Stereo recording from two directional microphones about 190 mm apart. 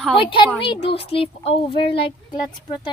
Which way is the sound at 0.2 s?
25° left (ahead or behind).